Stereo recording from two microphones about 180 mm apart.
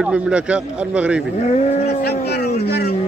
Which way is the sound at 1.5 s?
35° left (ahead or behind).